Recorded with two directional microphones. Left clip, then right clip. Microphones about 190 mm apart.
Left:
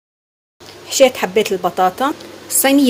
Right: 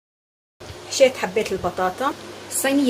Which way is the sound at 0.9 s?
40° left (ahead or behind).